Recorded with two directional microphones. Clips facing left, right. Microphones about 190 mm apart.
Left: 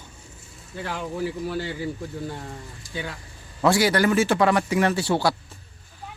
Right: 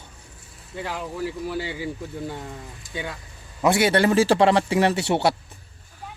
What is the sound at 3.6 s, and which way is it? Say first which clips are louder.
A man's voice: right 1 dB; 20° right (ahead or behind).